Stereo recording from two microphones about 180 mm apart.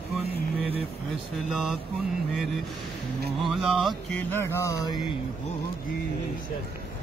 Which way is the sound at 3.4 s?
Centre (ahead or behind).